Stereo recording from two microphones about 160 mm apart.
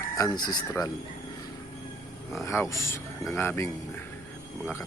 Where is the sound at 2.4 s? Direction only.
20° left (ahead or behind).